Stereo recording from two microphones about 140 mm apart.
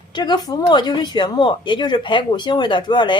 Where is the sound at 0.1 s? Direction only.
30° left (ahead or behind).